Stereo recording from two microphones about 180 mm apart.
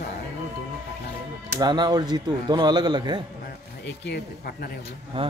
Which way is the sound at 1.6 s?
25° right (ahead or behind).